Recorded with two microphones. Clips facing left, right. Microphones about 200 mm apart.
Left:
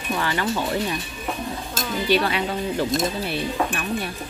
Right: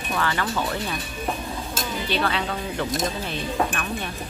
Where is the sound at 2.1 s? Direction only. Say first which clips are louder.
Left 4 dB; 15° left (ahead or behind).